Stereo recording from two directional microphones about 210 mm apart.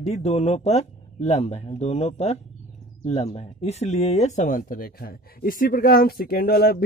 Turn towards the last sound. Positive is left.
turn(degrees=45)  # may be behind; listen again after turning